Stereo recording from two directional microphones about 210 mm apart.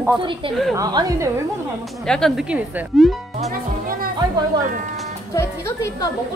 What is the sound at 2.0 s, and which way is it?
Speech, centre (ahead or behind).